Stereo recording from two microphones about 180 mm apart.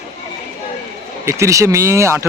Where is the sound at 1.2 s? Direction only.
15° right (ahead or behind).